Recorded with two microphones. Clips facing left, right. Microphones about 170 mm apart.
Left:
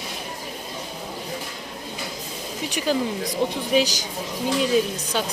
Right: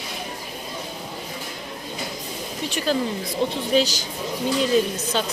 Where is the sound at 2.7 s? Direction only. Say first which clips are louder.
Even; 15° left (ahead or behind).